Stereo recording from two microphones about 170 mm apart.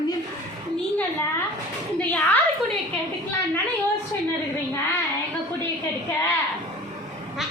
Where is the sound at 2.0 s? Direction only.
10° left (ahead or behind).